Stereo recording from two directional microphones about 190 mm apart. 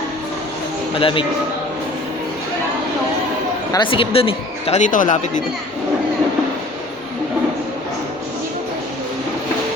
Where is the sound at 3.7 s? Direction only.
25° left (ahead or behind); by 5.4 s 40° left (ahead or behind).